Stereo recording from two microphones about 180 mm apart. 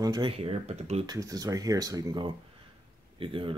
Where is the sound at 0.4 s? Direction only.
35° right (ahead or behind).